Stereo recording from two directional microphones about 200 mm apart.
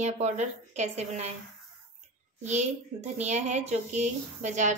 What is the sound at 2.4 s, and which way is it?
A woman's voice, 35° right (ahead or behind).